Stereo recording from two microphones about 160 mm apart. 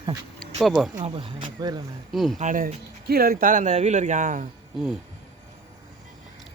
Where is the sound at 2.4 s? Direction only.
50° right (ahead or behind).